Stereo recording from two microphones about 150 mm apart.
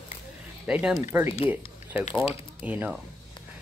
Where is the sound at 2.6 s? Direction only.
10° right (ahead or behind).